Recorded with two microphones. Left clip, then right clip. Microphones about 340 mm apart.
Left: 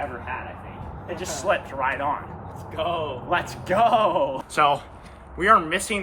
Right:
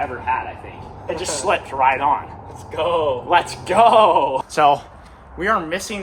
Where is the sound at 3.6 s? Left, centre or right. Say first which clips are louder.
Right 5 dB; centre.